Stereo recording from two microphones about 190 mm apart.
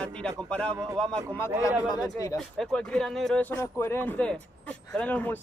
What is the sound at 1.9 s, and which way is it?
Speech, 20° left (ahead or behind).